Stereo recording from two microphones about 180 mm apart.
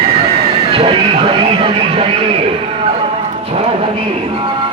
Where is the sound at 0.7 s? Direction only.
30° right (ahead or behind).